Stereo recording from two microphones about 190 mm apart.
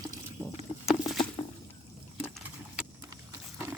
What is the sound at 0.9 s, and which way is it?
Patter, centre (ahead or behind).